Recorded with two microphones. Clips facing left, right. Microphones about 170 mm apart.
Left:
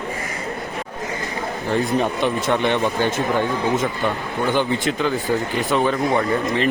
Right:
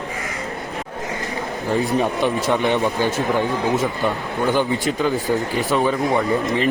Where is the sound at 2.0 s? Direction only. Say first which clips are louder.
Right 1 dB; centre (ahead or behind).